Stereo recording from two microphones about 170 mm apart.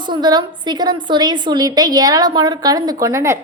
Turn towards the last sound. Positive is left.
turn(degrees=-15)  # may be behind; listen again after turning